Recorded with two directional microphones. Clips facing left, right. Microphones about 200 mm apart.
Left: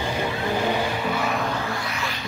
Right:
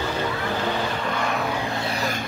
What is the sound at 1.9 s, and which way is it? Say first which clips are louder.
Music: right 4 dB; 45° right (ahead or behind).